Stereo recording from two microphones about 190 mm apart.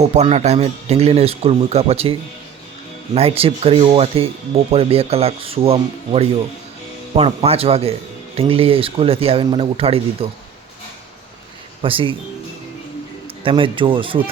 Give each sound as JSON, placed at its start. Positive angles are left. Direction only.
{"t": 0.0, "sound": "speech", "side_deg": -35}
{"t": 3.2, "sound": "speech", "side_deg": -30}
{"t": 11.8, "sound": "speech", "side_deg": -30}
{"t": 13.2, "sound": "speech", "side_deg": -25}